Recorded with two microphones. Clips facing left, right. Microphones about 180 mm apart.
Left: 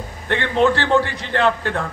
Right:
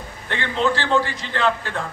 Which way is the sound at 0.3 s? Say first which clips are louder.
Left 5 dB; 60° left (ahead or behind).